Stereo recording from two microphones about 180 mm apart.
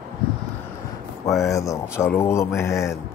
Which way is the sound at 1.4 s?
15° left (ahead or behind).